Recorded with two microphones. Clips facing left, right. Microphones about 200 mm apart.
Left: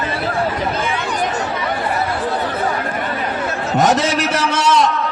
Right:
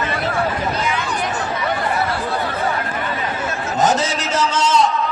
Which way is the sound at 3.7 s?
65° left (ahead or behind).